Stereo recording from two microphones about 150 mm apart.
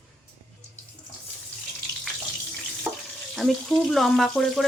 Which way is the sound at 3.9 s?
Centre (ahead or behind).